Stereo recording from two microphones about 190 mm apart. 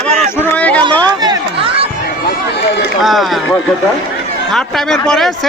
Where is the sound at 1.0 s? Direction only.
20° right (ahead or behind).